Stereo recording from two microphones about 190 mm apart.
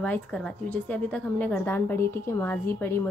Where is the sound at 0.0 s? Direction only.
5° left (ahead or behind).